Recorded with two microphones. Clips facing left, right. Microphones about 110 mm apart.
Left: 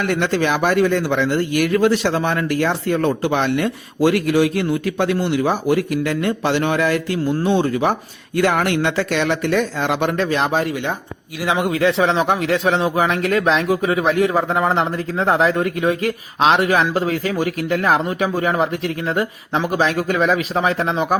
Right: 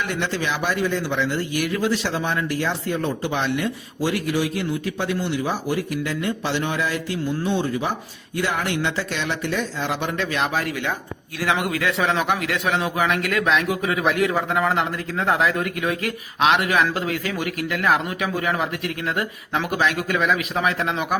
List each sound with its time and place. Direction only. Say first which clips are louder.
0.0 s speech: left 6 dB; 55° left (ahead or behind)
10.2 s speech: left 5 dB; 35° left (ahead or behind)